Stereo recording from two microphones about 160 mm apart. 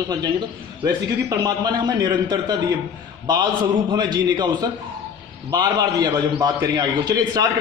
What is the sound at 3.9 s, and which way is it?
Speech, 25° right (ahead or behind).